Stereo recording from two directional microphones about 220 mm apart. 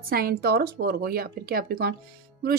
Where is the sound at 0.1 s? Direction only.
45° right (ahead or behind).